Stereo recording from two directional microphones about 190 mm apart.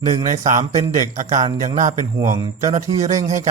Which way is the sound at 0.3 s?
40° right (ahead or behind).